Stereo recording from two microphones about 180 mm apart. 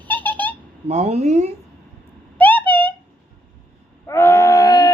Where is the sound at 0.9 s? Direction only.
35° right (ahead or behind).